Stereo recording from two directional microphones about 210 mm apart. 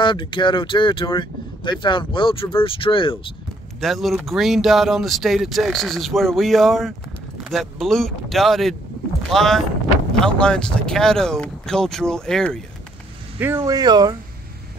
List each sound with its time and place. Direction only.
0.0 s speech: 25° left (ahead or behind)
3.8 s speech: centre (ahead or behind)
13.6 s speech: 20° right (ahead or behind)